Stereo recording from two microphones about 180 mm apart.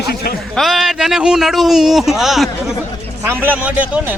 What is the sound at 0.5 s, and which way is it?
A man's voice, centre (ahead or behind).